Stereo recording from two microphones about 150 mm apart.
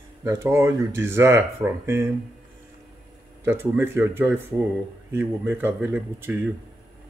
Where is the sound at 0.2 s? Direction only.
15° right (ahead or behind).